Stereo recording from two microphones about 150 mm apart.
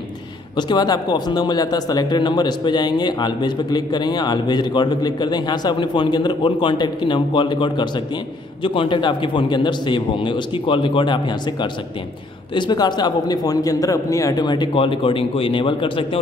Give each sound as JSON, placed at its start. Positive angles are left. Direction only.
{"t": 0.6, "sound": "a man's voice", "side_deg": 30}